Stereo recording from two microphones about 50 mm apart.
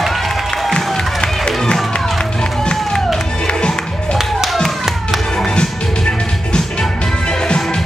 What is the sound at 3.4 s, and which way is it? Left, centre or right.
Music, centre.